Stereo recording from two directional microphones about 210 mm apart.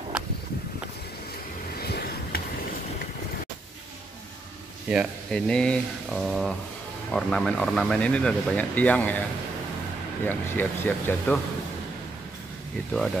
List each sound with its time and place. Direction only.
1.8 s a sound: 50° left (ahead or behind)
4.8 s speech: centre (ahead or behind)
10.2 s speech: 10° left (ahead or behind)